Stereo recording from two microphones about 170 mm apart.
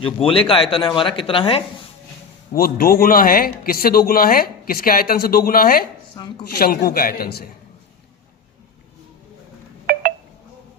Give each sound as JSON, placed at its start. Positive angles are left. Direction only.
{"t": 0.0, "sound": "speech", "side_deg": 30}
{"t": 2.5, "sound": "a man's voice", "side_deg": 60}
{"t": 6.1, "sound": "speech", "side_deg": 25}
{"t": 6.5, "sound": "a man's voice", "side_deg": 65}